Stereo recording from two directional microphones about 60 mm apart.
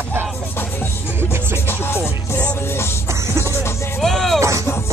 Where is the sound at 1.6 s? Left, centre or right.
Left.